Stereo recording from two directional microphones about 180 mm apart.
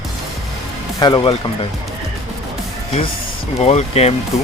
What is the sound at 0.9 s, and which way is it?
Speech, 25° left (ahead or behind).